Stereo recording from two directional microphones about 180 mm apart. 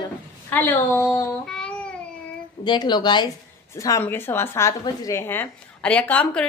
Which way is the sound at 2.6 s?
25° left (ahead or behind).